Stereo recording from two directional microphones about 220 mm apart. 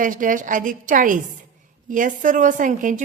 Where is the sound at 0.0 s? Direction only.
35° right (ahead or behind).